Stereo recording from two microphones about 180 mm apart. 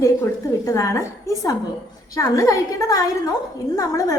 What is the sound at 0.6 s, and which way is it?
A woman's voice, 15° left (ahead or behind).